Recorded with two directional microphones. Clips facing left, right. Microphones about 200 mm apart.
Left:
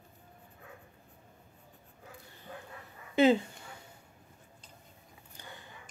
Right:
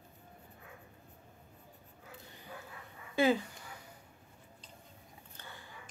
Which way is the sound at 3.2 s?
25° left (ahead or behind).